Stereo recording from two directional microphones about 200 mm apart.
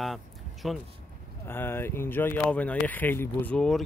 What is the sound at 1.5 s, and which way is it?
Speech, 10° left (ahead or behind).